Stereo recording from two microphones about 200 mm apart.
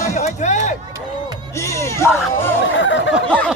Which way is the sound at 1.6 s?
15° left (ahead or behind).